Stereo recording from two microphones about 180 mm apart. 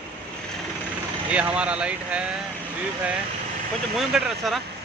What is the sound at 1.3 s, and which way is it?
Speech, 5° right (ahead or behind).